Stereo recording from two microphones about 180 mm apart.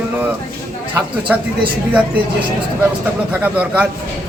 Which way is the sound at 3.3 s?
10° right (ahead or behind).